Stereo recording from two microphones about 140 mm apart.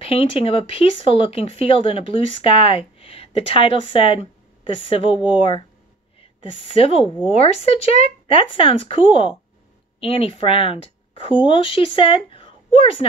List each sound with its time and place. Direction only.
0.0 s a woman's voice: 40° left (ahead or behind)